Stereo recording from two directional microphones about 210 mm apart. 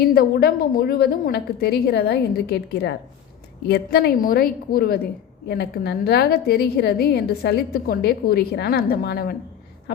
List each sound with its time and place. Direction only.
0.0 s a woman's voice: 45° left (ahead or behind)